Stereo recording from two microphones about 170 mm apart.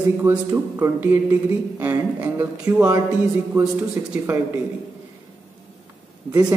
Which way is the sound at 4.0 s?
15° right (ahead or behind).